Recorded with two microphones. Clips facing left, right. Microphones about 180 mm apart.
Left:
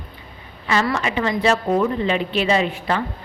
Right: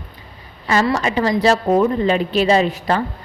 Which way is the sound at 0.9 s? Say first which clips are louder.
Right 4 dB; 40° right (ahead or behind).